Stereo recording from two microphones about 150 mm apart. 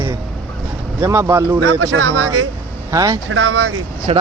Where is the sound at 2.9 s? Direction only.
25° right (ahead or behind).